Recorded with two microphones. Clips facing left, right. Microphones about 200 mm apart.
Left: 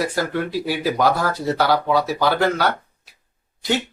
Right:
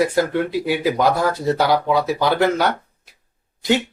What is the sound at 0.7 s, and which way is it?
Speech, 20° right (ahead or behind).